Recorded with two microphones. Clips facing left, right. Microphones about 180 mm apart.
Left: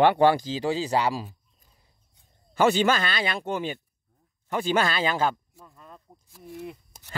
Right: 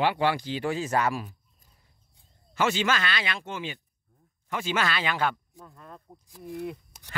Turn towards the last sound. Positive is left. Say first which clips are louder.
# right 4 dB
turn(degrees=0)  # may be behind; listen again after turning